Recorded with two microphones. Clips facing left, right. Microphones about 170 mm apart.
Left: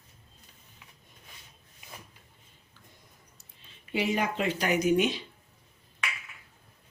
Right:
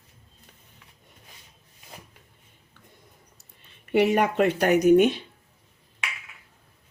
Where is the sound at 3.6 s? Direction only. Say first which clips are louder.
Right 9 dB; 65° right (ahead or behind).